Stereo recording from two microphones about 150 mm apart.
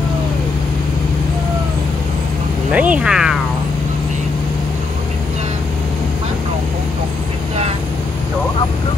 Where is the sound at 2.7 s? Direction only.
10° right (ahead or behind).